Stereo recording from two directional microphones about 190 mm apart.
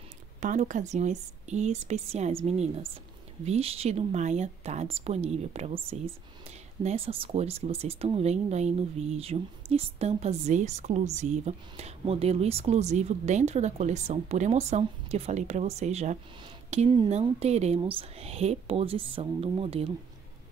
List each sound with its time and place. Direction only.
0.4 s speech: 40° right (ahead or behind)